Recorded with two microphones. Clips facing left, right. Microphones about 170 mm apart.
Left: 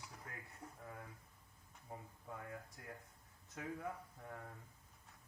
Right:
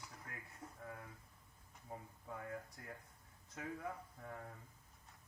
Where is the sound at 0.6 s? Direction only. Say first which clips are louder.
Right 1 dB; 10° left (ahead or behind).